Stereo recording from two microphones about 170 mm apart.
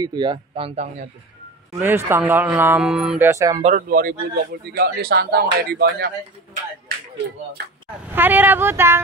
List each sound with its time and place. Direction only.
0.0 s a man's voice: 25° right (ahead or behind)
1.8 s speech: 15° right (ahead or behind)
3.3 s a man's voice: 20° right (ahead or behind)
3.6 s a man's voice: 50° right (ahead or behind); by 6.1 s 75° right (ahead or behind)
8.1 s speech: 10° right (ahead or behind)